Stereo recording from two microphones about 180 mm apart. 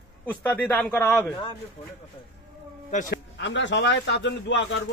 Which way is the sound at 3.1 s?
80° left.